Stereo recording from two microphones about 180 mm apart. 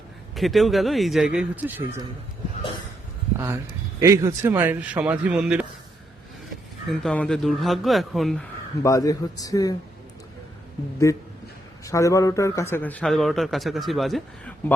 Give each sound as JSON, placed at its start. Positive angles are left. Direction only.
{"t": 0.3, "sound": "a man's voice", "side_deg": 0}
{"t": 3.3, "sound": "speech", "side_deg": -15}
{"t": 7.0, "sound": "a man's voice", "side_deg": 5}
{"t": 8.8, "sound": "speech", "side_deg": 20}
{"t": 11.1, "sound": "a man's voice", "side_deg": 15}